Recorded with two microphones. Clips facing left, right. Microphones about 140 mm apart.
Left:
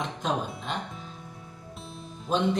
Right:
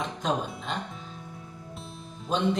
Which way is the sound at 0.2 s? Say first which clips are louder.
Right 1 dB; centre (ahead or behind).